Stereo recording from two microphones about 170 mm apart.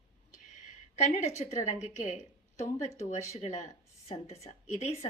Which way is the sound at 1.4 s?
45° left (ahead or behind).